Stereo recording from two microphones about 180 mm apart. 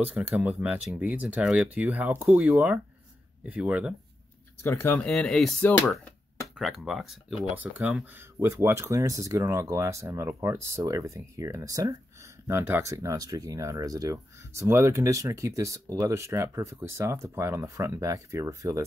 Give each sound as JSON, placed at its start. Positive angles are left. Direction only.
{"t": 0.0, "sound": "speech", "side_deg": -10}
{"t": 4.6, "sound": "speech", "side_deg": 15}
{"t": 6.5, "sound": "speech", "side_deg": -5}